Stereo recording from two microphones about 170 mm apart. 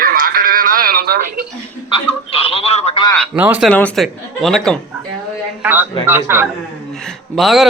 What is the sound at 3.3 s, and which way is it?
Speech, 10° right (ahead or behind).